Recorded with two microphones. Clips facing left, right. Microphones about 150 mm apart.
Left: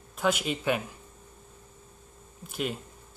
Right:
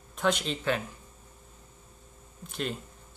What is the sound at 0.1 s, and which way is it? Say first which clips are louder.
Speech: left 1 dB; 5° left (ahead or behind).